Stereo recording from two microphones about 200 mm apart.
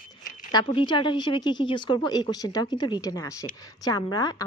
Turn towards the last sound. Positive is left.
turn(degrees=20)  # may be behind; listen again after turning